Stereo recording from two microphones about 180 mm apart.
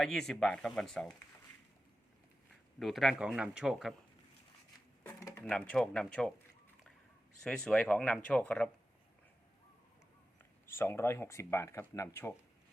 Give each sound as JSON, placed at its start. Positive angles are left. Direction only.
{"t": 0.0, "sound": "speech", "side_deg": 0}
{"t": 2.7, "sound": "speech", "side_deg": 0}
{"t": 5.0, "sound": "speech", "side_deg": 15}
{"t": 7.4, "sound": "speech", "side_deg": 5}
{"t": 10.7, "sound": "speech", "side_deg": 15}